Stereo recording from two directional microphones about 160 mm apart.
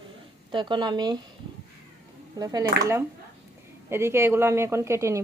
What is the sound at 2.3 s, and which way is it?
Speech, 25° right (ahead or behind).